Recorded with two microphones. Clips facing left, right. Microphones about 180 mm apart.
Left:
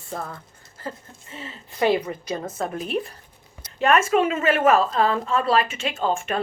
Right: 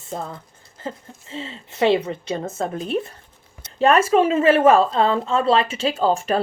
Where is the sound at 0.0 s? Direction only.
20° right (ahead or behind).